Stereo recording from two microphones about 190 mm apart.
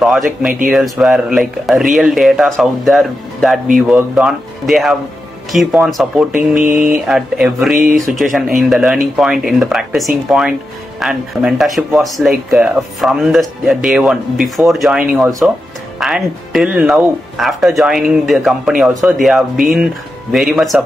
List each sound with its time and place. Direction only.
0.0 s speech: centre (ahead or behind)
6.6 s mantra: 45° right (ahead or behind)
7.1 s speech: 5° right (ahead or behind)
15.2 s speech: 15° right (ahead or behind)
16.0 s speech: centre (ahead or behind)